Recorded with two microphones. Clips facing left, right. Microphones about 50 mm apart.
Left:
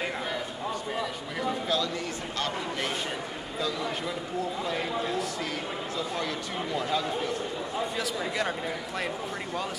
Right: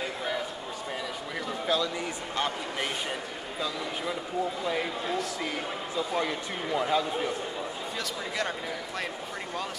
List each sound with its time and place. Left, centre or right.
1.7 s a sound: centre
2.3 s speech: centre
3.6 s speech: centre